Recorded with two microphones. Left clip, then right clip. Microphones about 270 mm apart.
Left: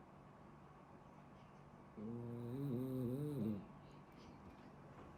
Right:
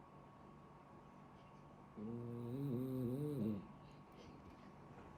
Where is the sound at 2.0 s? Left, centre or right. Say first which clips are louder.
Right 1 dB; centre.